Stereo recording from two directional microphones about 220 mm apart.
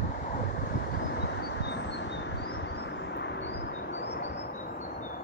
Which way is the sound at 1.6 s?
50° left (ahead or behind).